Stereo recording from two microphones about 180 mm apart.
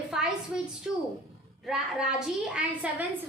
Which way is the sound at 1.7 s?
5° right (ahead or behind).